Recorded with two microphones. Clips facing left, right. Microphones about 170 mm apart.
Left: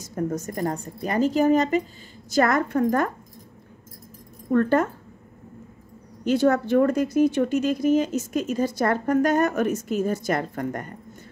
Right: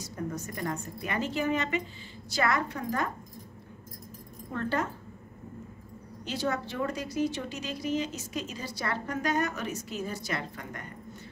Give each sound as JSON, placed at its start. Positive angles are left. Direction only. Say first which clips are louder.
{"t": 0.0, "sound": "a woman's voice", "louder": "left 8 dB", "side_deg": 45}
{"t": 4.5, "sound": "speech", "louder": "left 11 dB", "side_deg": 50}
{"t": 6.2, "sound": "speech", "louder": "left 12 dB", "side_deg": 50}